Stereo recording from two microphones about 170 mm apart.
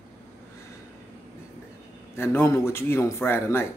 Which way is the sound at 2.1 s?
15° left (ahead or behind).